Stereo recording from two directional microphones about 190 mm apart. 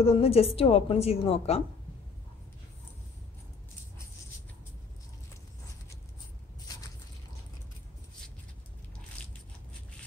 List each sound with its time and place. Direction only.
0.0 s a woman's voice: 30° left (ahead or behind)